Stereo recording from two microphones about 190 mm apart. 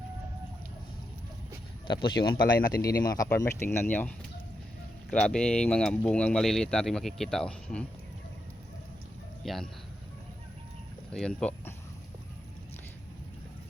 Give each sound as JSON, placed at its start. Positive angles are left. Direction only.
{"t": 1.9, "sound": "speech", "side_deg": 25}
{"t": 5.1, "sound": "speech", "side_deg": 5}
{"t": 9.4, "sound": "speech", "side_deg": 0}
{"t": 11.1, "sound": "speech", "side_deg": 5}